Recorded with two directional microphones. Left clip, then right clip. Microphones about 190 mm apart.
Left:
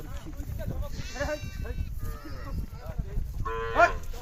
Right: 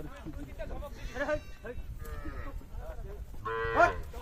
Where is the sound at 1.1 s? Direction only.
40° left (ahead or behind).